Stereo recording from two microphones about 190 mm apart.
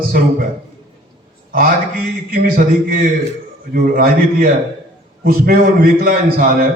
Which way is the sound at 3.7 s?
50° right (ahead or behind).